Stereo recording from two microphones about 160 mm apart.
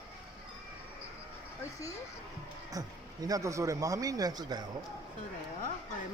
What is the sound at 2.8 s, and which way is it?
A man's voice, 25° right (ahead or behind).